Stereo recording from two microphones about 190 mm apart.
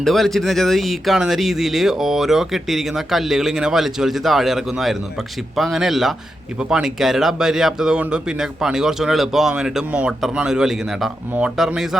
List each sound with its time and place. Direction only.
0.0 s speech: centre (ahead or behind)